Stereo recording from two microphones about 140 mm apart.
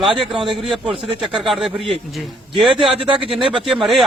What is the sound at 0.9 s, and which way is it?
Speech, 40° right (ahead or behind).